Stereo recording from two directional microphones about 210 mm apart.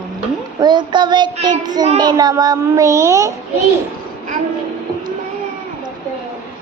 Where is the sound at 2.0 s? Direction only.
20° right (ahead or behind).